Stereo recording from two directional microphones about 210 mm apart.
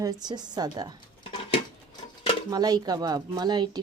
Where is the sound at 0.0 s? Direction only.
20° right (ahead or behind).